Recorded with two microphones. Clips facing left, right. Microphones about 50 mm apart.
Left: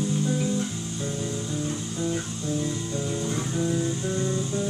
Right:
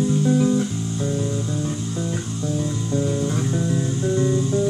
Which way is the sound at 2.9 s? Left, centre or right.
Centre.